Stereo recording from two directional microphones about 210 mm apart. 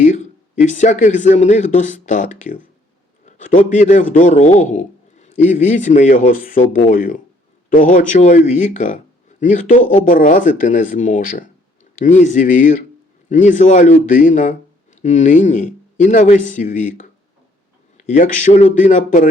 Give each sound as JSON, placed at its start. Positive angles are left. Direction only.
{"t": 0.0, "sound": "speech", "side_deg": 35}
{"t": 3.2, "sound": "a sound", "side_deg": 35}
{"t": 3.6, "sound": "a man's voice", "side_deg": 35}